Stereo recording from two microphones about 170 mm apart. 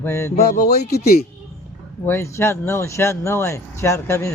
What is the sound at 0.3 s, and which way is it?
Speech, 65° left (ahead or behind).